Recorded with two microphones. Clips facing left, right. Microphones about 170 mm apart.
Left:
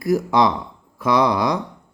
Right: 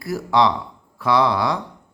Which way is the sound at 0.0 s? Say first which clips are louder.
Left 2 dB; 20° left (ahead or behind).